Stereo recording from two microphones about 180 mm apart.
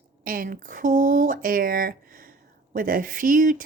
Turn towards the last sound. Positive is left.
turn(degrees=-50)  # may be behind; listen again after turning